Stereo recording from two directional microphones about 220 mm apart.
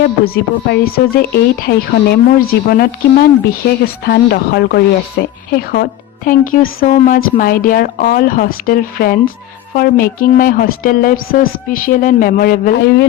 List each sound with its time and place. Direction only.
0.0 s speech: 45° left (ahead or behind)